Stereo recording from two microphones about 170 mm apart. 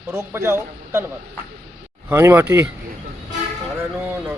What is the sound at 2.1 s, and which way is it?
Speech, 15° right (ahead or behind).